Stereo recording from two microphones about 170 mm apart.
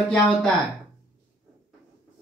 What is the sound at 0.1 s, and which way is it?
Speech, 5° left (ahead or behind).